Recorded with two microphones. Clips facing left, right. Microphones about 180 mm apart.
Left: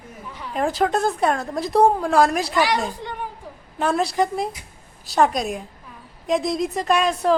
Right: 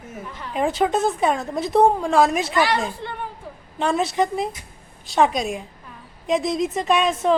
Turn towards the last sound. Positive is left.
turn(degrees=0)  # may be behind; listen again after turning